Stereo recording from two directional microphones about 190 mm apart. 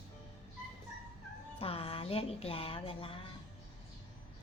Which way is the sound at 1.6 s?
30° left (ahead or behind).